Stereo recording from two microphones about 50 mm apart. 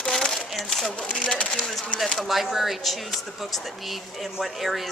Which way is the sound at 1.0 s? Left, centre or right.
Left.